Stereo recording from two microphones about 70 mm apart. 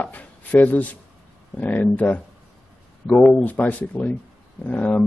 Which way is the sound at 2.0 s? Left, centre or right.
Left.